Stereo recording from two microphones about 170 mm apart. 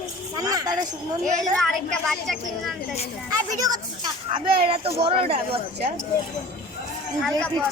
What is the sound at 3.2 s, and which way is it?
Speech, 20° right (ahead or behind).